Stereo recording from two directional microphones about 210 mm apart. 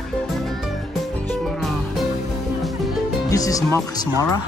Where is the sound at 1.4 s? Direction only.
Centre (ahead or behind).